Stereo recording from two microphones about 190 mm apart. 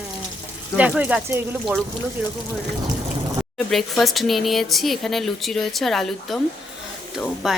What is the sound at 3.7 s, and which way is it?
Speech, centre (ahead or behind).